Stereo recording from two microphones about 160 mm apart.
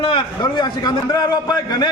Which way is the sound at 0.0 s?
30° left (ahead or behind).